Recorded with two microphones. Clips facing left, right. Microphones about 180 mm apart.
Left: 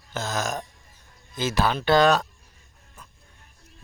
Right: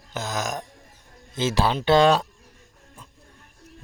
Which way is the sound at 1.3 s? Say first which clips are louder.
Right 1 dB; 25° right (ahead or behind).